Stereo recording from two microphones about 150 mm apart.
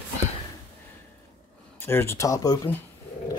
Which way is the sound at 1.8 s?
15° left (ahead or behind).